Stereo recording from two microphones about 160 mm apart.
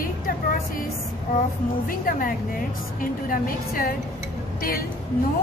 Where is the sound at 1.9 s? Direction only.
60° left (ahead or behind).